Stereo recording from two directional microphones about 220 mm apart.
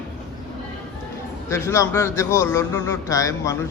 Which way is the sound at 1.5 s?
10° left (ahead or behind).